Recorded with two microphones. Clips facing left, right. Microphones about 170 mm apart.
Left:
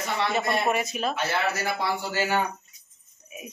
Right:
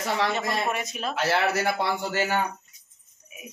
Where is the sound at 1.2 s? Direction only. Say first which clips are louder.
Right 7 dB; 60° right (ahead or behind).